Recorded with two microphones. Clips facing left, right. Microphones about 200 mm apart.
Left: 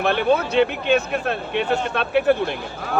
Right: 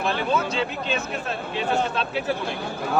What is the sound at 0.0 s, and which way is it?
Speech, 65° left (ahead or behind).